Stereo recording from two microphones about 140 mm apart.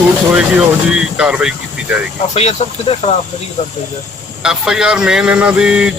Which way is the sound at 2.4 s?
45° left (ahead or behind).